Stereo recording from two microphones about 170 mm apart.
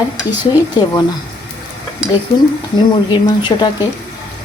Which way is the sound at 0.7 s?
25° left (ahead or behind).